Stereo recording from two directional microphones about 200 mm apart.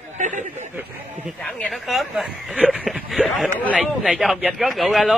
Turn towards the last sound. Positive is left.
turn(degrees=0)  # may be behind; listen again after turning